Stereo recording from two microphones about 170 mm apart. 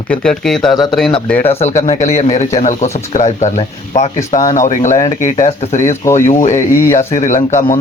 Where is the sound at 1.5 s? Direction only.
40° left (ahead or behind).